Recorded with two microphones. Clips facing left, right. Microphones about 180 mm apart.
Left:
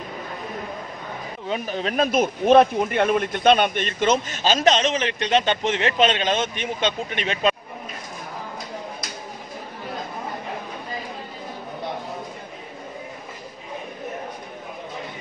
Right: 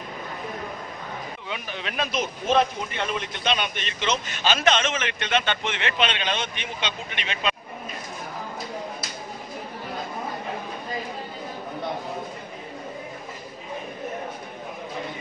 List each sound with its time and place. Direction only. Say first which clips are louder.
1.5 s speech: left 9 dB; 40° left (ahead or behind)